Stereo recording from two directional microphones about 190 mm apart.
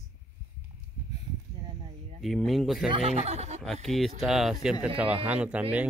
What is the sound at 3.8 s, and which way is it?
Speech, centre (ahead or behind).